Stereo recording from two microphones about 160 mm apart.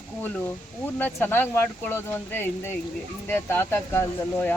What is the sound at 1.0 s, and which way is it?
Speech, 10° left (ahead or behind).